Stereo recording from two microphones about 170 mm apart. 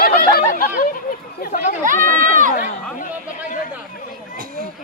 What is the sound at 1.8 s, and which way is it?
Speech, 50° right (ahead or behind).